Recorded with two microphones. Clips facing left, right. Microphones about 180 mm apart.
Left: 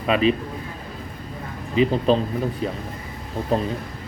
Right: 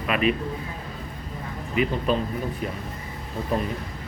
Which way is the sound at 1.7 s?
30° left (ahead or behind).